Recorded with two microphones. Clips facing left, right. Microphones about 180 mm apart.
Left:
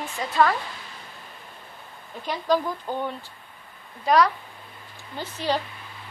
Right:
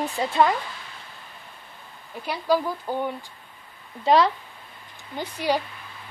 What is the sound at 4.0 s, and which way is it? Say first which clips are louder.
Speech: right 1 dB; 25° right (ahead or behind).